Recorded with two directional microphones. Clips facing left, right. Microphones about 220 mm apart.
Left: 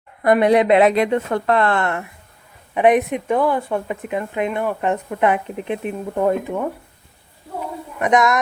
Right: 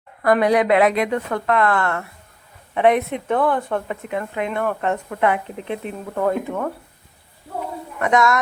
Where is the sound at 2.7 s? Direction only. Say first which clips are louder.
Left 2 dB; 15° left (ahead or behind).